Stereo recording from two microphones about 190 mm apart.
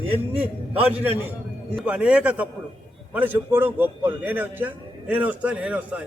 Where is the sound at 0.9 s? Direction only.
10° right (ahead or behind).